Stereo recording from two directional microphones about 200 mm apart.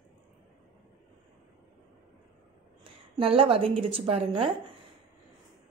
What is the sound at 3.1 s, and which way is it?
A woman's voice, 25° right (ahead or behind).